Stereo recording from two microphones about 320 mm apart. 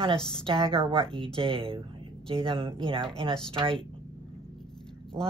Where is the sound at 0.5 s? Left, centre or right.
Centre.